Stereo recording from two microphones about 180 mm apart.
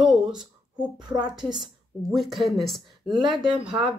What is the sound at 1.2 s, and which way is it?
Speech, 25° right (ahead or behind).